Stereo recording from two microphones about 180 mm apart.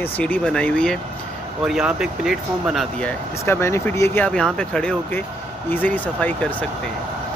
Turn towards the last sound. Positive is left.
turn(degrees=10)  # may be behind; listen again after turning